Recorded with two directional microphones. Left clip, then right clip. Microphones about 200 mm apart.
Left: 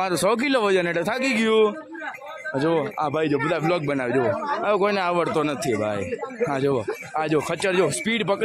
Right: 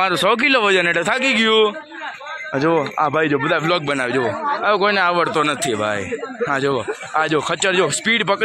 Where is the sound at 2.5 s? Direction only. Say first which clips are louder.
Right 5 dB; 20° right (ahead or behind).